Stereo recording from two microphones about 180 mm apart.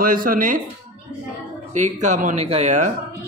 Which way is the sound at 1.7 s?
40° right (ahead or behind).